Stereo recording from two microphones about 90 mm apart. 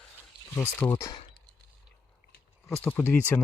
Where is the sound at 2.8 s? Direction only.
20° left (ahead or behind).